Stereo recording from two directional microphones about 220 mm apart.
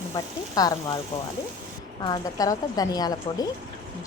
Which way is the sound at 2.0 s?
15° left (ahead or behind).